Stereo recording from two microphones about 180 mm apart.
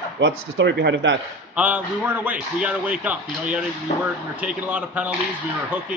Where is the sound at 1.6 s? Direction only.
10° right (ahead or behind).